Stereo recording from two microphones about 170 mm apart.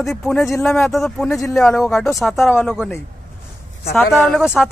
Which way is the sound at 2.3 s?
15° left (ahead or behind).